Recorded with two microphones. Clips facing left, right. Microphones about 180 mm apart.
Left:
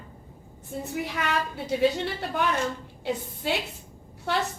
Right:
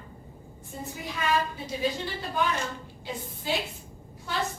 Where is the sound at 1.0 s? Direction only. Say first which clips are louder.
Right 4 dB; 70° left (ahead or behind).